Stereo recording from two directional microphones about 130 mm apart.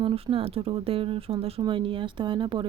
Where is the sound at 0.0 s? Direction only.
45° right (ahead or behind).